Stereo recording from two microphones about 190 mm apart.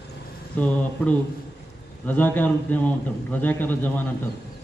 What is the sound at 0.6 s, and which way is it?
Speech, 10° left (ahead or behind).